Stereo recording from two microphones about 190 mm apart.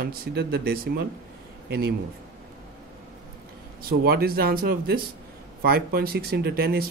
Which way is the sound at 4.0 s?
55° right (ahead or behind).